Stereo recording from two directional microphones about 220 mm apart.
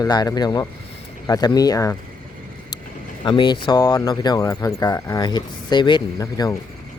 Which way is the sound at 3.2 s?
20° left (ahead or behind).